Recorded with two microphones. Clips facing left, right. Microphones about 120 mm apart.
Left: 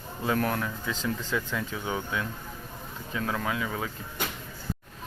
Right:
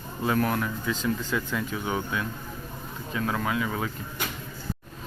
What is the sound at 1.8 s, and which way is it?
Speech, 25° right (ahead or behind).